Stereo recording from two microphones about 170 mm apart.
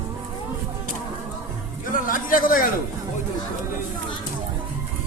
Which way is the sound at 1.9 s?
55° left (ahead or behind).